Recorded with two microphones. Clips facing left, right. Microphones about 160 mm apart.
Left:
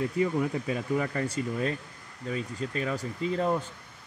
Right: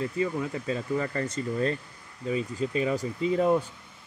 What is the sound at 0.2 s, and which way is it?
Speech, 10° left (ahead or behind).